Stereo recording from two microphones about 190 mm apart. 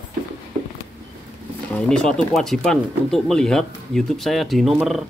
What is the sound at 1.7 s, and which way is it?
Speech, 5° left (ahead or behind).